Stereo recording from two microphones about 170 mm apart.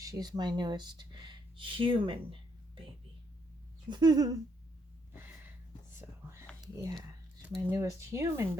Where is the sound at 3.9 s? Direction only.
25° right (ahead or behind).